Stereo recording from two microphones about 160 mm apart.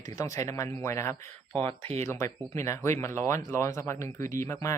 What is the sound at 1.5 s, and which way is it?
Speech, 35° right (ahead or behind).